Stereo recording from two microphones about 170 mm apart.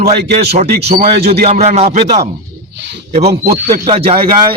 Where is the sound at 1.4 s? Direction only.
40° right (ahead or behind).